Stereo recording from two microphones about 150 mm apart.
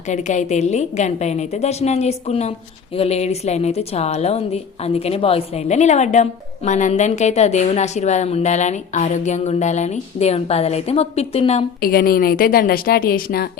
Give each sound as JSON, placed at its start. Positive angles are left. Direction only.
{"t": 0.1, "sound": "a woman's voice", "side_deg": 50}
{"t": 11.8, "sound": "a woman's voice", "side_deg": 80}